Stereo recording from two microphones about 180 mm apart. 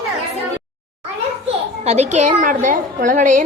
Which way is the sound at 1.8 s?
40° right (ahead or behind).